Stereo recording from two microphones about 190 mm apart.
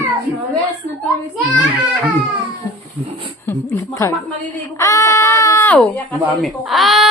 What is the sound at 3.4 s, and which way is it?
A woman's voice, 15° left (ahead or behind).